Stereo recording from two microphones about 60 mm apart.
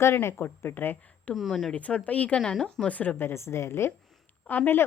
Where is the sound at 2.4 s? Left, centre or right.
Centre.